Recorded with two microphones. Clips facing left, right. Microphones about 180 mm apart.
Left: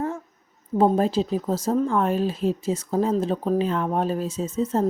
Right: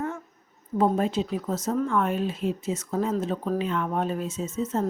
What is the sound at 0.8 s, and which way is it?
Speech, 35° left (ahead or behind).